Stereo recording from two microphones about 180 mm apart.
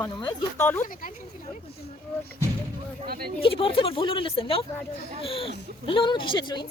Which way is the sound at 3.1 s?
60° right (ahead or behind).